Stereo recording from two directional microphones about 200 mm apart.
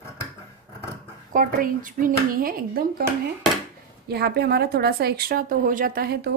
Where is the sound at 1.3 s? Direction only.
45° right (ahead or behind).